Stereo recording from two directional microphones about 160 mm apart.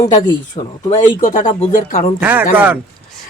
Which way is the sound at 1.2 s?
50° left (ahead or behind).